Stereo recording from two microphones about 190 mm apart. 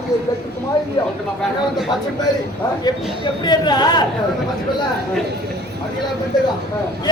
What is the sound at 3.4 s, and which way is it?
Speech, 20° left (ahead or behind).